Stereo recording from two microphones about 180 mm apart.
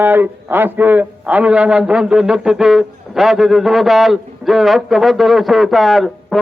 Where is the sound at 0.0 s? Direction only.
10° right (ahead or behind).